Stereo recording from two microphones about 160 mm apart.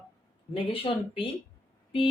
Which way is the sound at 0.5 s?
35° left (ahead or behind).